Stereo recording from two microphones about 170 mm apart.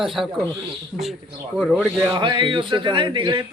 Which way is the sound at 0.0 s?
Centre (ahead or behind).